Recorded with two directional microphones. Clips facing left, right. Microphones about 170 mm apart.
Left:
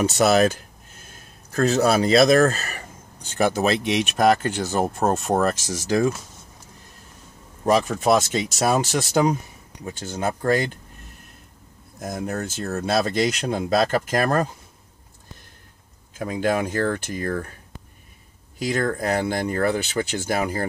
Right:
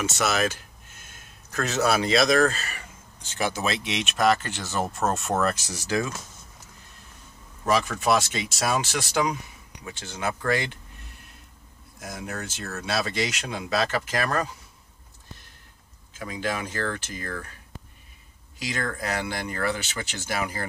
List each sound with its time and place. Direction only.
0.0 s speech: 35° left (ahead or behind); by 4.8 s 50° left (ahead or behind)
5.0 s speech: 35° left (ahead or behind)
7.6 s speech: 40° left (ahead or behind)
12.0 s speech: 45° left (ahead or behind)
16.2 s speech: 45° left (ahead or behind)
18.6 s speech: 50° left (ahead or behind)